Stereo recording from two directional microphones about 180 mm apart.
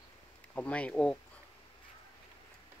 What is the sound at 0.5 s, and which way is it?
Speech, 5° left (ahead or behind).